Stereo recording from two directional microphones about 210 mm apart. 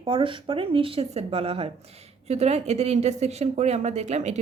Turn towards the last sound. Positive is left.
turn(degrees=-35)  # may be behind; listen again after turning